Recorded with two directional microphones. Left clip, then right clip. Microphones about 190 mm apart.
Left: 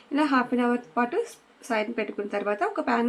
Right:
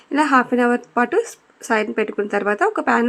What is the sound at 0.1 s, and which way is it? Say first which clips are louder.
A woman's voice: right 8 dB; 40° right (ahead or behind).